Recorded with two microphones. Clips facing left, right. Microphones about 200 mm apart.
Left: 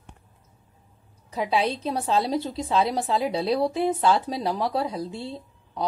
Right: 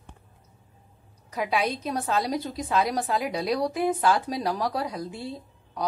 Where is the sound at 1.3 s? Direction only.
25° left (ahead or behind).